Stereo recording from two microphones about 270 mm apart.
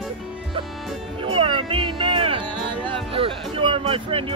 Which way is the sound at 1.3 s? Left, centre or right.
Centre.